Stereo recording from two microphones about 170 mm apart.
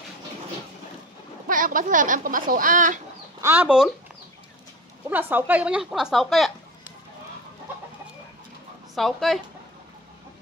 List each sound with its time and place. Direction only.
1.5 s speech: 55° right (ahead or behind)
3.3 s speech: 15° right (ahead or behind)
5.1 s a woman's voice: 10° right (ahead or behind)
8.9 s a woman's voice: centre (ahead or behind)